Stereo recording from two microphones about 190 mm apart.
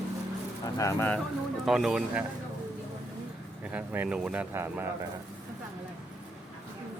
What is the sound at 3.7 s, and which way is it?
Speech, 10° right (ahead or behind).